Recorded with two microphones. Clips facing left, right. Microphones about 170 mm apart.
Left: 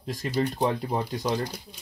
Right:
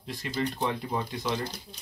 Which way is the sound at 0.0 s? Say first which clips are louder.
Left 4 dB; 40° left (ahead or behind).